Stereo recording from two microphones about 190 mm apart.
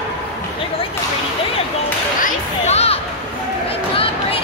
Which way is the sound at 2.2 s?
35° left (ahead or behind).